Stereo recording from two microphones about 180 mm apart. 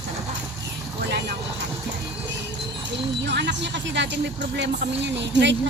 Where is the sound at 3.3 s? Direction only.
75° right (ahead or behind).